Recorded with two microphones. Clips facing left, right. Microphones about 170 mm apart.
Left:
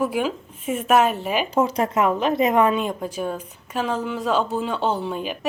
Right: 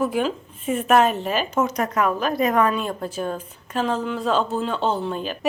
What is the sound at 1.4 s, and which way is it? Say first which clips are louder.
Speech: left 2 dB; 30° left (ahead or behind).